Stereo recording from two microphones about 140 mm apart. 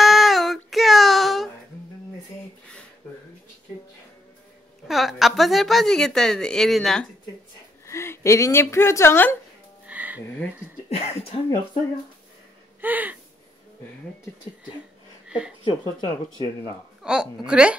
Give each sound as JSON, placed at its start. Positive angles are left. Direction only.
{"t": 0.0, "sound": "a sound", "side_deg": 0}
{"t": 4.8, "sound": "a woman's voice", "side_deg": 0}
{"t": 7.8, "sound": "a woman's voice", "side_deg": 20}
{"t": 9.8, "sound": "music", "side_deg": -10}
{"t": 11.0, "sound": "speech", "side_deg": 45}
{"t": 12.8, "sound": "a sound", "side_deg": -10}
{"t": 15.2, "sound": "speech", "side_deg": -5}
{"t": 15.6, "sound": "speech", "side_deg": 35}
{"t": 17.0, "sound": "a woman's voice", "side_deg": -5}
{"t": 17.5, "sound": "a sound", "side_deg": -5}